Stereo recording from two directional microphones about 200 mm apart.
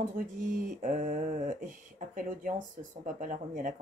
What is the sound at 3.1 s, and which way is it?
Speech, 40° right (ahead or behind).